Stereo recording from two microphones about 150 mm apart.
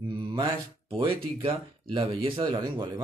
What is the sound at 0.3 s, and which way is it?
Speech, 35° right (ahead or behind).